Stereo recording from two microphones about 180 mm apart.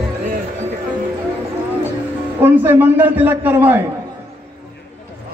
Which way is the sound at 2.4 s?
10° right (ahead or behind).